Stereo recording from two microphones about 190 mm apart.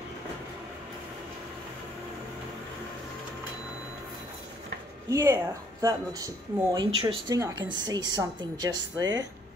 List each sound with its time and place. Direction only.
5.1 s speech: 15° right (ahead or behind)